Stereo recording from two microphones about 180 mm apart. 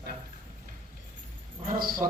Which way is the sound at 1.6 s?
50° right (ahead or behind).